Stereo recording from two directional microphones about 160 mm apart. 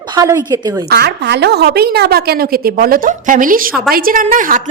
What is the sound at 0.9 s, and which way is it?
A woman's voice, 85° right.